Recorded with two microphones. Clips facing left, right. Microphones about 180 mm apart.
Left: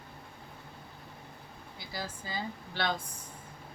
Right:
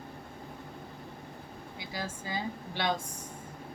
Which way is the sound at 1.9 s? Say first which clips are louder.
Right 2 dB; 15° right (ahead or behind).